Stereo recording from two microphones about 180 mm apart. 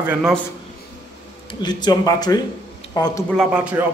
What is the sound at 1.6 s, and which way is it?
Speech, 25° left (ahead or behind).